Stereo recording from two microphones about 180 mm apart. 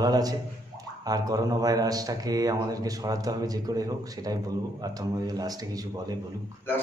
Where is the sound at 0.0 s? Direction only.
20° right (ahead or behind).